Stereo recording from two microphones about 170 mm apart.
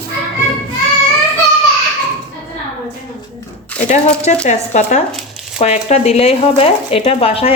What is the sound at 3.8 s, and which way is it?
A woman's voice, 40° left (ahead or behind).